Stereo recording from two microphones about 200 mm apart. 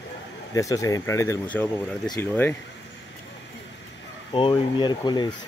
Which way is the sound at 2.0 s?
20° left (ahead or behind).